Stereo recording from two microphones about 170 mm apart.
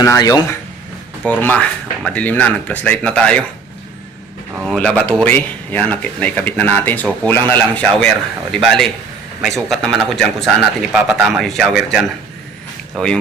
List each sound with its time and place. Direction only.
0.0 s speech: 20° left (ahead or behind)
1.2 s speech: 10° left (ahead or behind)
4.6 s speech: centre (ahead or behind)